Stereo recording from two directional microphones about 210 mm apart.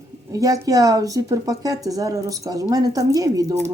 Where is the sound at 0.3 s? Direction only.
15° right (ahead or behind).